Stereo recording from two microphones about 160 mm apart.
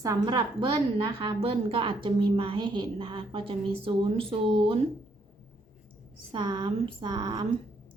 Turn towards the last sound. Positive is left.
turn(degrees=-25)  # may be behind; listen again after turning